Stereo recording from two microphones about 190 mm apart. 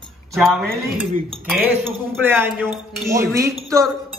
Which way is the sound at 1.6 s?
10° right (ahead or behind).